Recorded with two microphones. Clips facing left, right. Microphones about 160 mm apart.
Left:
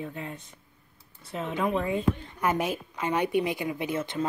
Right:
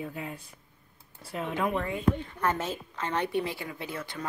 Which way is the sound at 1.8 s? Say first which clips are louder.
Left 1 dB; 15° left (ahead or behind).